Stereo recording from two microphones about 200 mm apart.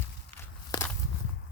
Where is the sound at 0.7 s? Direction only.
20° left (ahead or behind).